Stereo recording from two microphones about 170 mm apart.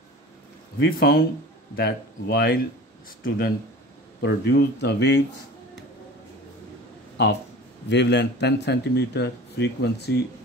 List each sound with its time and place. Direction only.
0.7 s speech: 65° left (ahead or behind)
4.2 s speech: 80° left
7.2 s speech: 85° left